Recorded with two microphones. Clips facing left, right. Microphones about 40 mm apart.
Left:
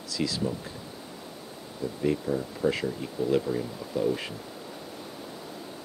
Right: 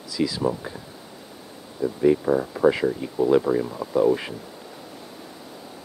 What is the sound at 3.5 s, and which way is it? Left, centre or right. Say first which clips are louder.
Speech: right 8 dB; right.